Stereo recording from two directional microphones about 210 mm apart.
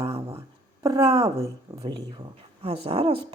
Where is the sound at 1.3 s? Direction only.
15° right (ahead or behind).